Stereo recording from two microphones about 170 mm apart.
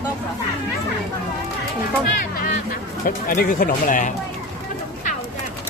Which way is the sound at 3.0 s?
55° left (ahead or behind).